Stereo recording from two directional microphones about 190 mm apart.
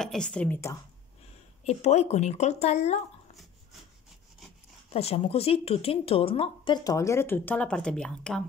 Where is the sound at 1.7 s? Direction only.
35° left (ahead or behind).